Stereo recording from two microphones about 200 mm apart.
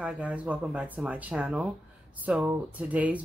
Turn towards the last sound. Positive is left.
turn(degrees=-5)  # may be behind; listen again after turning